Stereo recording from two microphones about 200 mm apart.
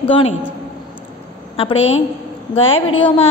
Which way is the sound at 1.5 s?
30° left (ahead or behind).